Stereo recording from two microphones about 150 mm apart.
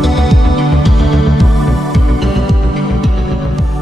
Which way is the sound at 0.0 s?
Centre (ahead or behind).